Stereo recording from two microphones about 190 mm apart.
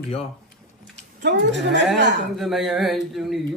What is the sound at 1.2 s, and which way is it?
Speech, 65° right (ahead or behind).